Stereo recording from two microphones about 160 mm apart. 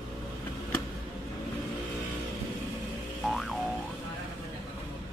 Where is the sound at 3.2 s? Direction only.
Centre (ahead or behind).